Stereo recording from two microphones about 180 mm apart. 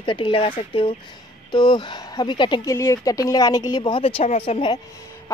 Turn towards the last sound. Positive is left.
turn(degrees=30)  # may be behind; listen again after turning